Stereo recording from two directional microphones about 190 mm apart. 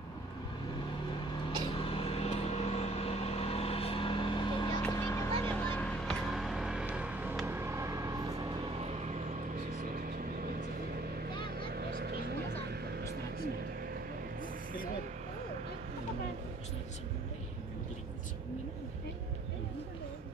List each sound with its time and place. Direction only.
1.7 s vehicle: 30° left (ahead or behind); by 8.5 s 15° right (ahead or behind)
11.4 s vehicle: 55° right (ahead or behind)